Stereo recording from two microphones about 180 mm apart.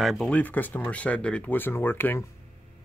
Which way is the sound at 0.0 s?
Centre (ahead or behind).